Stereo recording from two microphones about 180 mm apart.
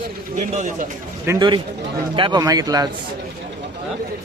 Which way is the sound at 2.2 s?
25° right (ahead or behind).